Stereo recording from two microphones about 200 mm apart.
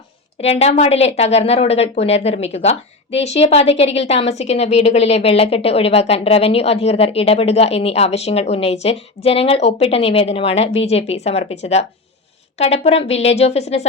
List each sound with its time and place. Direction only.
0.4 s a woman's voice: 30° left (ahead or behind)